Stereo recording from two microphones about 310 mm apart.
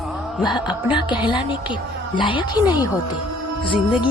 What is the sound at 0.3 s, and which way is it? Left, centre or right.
Speech, centre.